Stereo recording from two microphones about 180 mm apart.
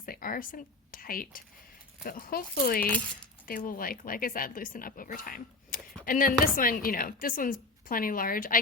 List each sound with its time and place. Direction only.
0.0 s a woman's voice: 50° left (ahead or behind)